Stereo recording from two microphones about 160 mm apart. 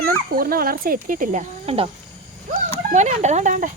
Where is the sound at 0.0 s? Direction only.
65° right (ahead or behind); by 1.9 s 40° right (ahead or behind).